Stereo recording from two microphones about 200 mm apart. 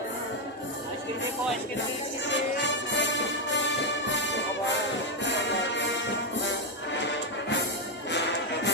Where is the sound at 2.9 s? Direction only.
65° left (ahead or behind).